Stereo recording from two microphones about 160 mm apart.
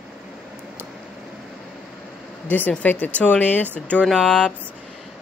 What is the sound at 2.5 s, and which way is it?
A woman's voice, 10° left (ahead or behind).